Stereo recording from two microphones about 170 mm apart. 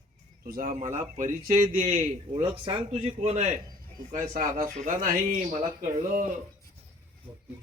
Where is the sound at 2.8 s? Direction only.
40° right (ahead or behind).